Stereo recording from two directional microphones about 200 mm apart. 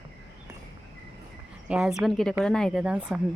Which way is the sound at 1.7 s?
Centre (ahead or behind).